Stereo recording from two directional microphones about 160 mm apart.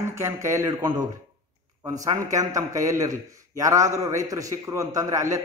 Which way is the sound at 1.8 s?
20° right (ahead or behind).